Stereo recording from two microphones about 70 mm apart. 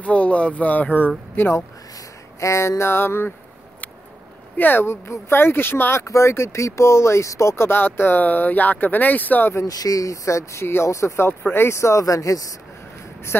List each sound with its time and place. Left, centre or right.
0.0 s speech: centre
2.4 s speech: left
4.6 s speech: left
6.0 s speech: left
9.7 s speech: left